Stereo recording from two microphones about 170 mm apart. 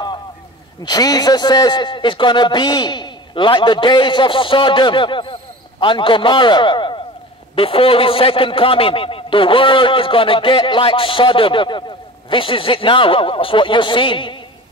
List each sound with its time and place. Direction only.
0.8 s a man's voice: 25° left (ahead or behind)